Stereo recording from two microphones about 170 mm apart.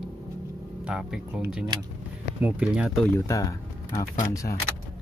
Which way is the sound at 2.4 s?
5° right (ahead or behind).